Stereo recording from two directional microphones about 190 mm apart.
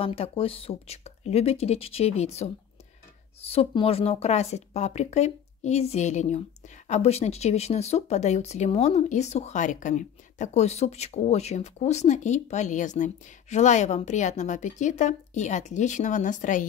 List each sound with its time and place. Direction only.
0.0 s speech: 30° left (ahead or behind)